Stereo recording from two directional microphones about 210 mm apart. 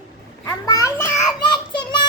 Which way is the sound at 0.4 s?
15° left (ahead or behind).